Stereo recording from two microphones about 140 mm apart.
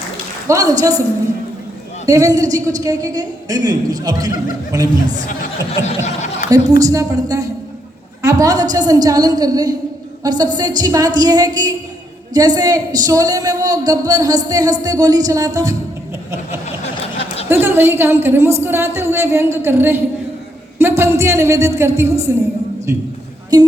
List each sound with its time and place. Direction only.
0.4 s speech: 25° right (ahead or behind)
2.0 s speech: 25° right (ahead or behind)
5.8 s snicker: 55° left (ahead or behind)
6.5 s speech: 25° right (ahead or behind)
17.5 s a woman's voice: 15° right (ahead or behind)
23.5 s speech: 25° right (ahead or behind)